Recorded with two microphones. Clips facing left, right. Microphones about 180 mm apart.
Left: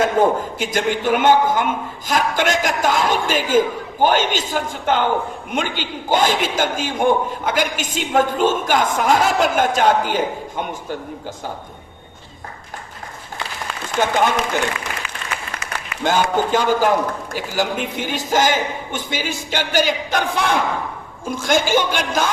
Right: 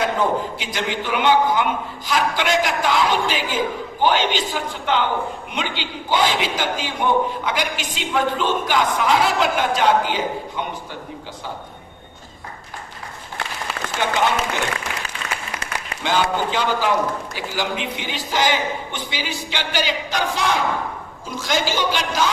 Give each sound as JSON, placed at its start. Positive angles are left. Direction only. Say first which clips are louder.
{"t": 0.0, "sound": "a man's voice", "louder": "left 4 dB", "side_deg": 45}
{"t": 14.0, "sound": "a man's voice", "louder": "left 3 dB", "side_deg": 45}
{"t": 16.0, "sound": "a man's voice", "louder": "left 3 dB", "side_deg": 45}